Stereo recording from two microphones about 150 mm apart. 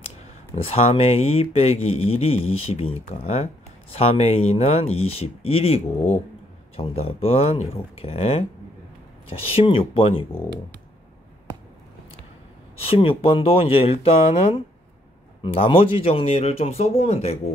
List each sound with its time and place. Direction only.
0.6 s speech: 45° left (ahead or behind)
12.8 s speech: 40° left (ahead or behind)
14.3 s speech: 50° left (ahead or behind)
15.4 s speech: 35° left (ahead or behind)